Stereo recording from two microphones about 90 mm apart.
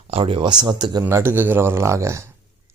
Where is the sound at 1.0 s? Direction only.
30° right (ahead or behind).